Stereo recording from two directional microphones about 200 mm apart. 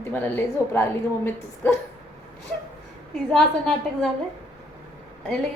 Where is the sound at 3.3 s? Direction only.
5° left (ahead or behind).